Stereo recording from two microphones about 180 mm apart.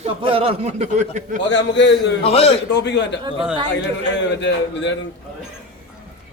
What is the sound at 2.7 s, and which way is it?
A man's voice, 75° left (ahead or behind).